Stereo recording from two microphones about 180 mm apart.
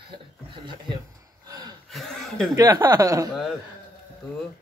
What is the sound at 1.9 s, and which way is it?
Chuckle, centre (ahead or behind).